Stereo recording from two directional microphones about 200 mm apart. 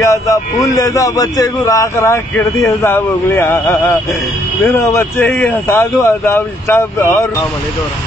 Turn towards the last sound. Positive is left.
turn(degrees=10)  # may be behind; listen again after turning